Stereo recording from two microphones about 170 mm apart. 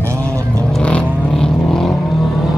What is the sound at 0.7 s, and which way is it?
Vehicle, 5° left (ahead or behind).